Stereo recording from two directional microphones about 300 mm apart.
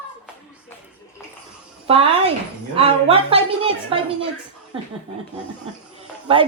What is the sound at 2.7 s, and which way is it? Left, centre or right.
A woman's voice, centre.